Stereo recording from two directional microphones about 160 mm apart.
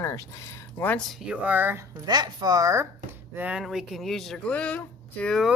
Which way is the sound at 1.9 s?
25° right (ahead or behind).